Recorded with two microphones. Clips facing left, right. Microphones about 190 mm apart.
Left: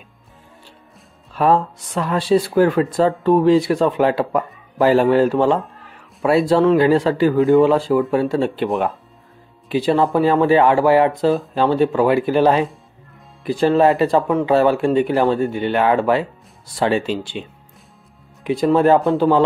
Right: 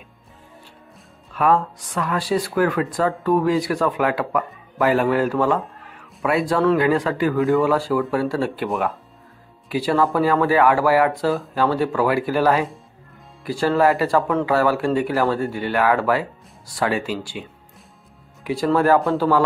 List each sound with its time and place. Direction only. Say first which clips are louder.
1.3 s speech: left 3 dB; 30° left (ahead or behind)
9.7 s speech: left 3 dB; 25° left (ahead or behind)